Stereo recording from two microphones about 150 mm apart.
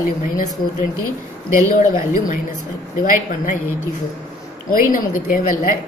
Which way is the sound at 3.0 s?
60° left (ahead or behind).